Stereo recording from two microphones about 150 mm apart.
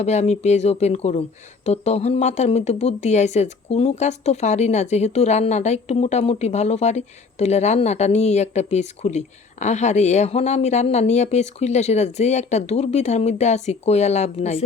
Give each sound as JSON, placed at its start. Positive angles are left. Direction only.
{"t": 0.0, "sound": "speech", "side_deg": 50}